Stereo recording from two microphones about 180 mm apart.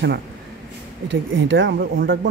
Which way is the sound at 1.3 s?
90° right.